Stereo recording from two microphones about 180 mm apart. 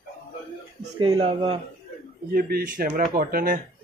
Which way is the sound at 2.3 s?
60° right (ahead or behind).